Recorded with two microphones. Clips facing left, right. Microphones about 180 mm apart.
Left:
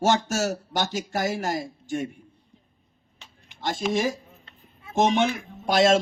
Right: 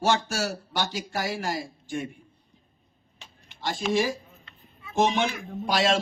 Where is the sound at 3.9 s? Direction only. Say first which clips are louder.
Right 3 dB; 45° left (ahead or behind).